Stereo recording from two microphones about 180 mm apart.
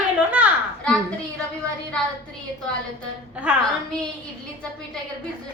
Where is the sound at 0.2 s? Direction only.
5° right (ahead or behind).